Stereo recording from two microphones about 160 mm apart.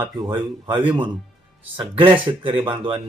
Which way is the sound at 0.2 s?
30° right (ahead or behind).